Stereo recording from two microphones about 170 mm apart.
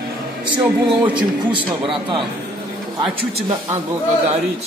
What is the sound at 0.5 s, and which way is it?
A man's voice, 30° right (ahead or behind).